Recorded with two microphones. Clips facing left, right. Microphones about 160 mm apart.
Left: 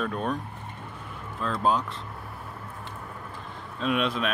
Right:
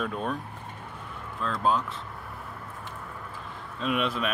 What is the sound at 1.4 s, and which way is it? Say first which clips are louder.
Speech: left 1 dB; centre (ahead or behind).